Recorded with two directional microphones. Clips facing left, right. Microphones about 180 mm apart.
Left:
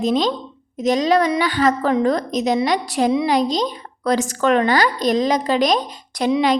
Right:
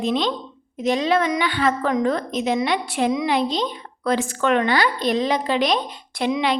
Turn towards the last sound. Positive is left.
turn(degrees=40)  # may be behind; listen again after turning